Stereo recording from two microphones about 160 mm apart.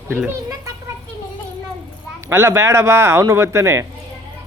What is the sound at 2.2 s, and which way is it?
A man's voice, 15° right (ahead or behind).